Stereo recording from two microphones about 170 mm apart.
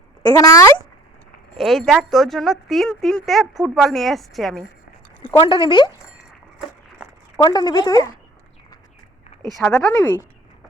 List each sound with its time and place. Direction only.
0.2 s speech: 20° left (ahead or behind)
1.5 s speech: centre (ahead or behind)
5.4 s speech: 30° left (ahead or behind)
7.3 s speech: 25° left (ahead or behind)
9.6 s speech: 5° left (ahead or behind)